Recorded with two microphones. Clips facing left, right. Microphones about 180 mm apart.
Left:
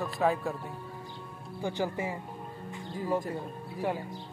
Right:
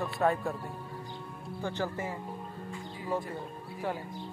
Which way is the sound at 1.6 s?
15° left (ahead or behind).